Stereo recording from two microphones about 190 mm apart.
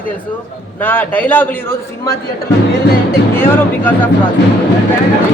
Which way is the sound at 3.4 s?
10° left (ahead or behind).